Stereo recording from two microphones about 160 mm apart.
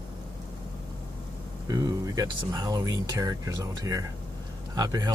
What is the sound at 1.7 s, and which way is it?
Speech, 25° right (ahead or behind).